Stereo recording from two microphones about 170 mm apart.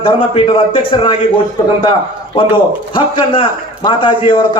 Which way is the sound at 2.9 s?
30° left (ahead or behind).